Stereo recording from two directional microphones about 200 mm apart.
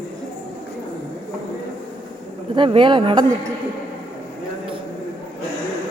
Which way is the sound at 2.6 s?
25° right (ahead or behind).